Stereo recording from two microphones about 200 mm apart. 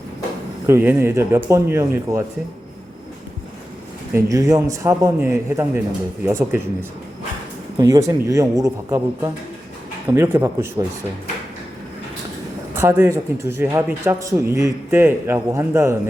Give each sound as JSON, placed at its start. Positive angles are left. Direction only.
{"t": 0.7, "sound": "speech", "side_deg": -10}
{"t": 4.1, "sound": "speech", "side_deg": -15}
{"t": 7.8, "sound": "speech", "side_deg": -15}
{"t": 12.7, "sound": "speech", "side_deg": -10}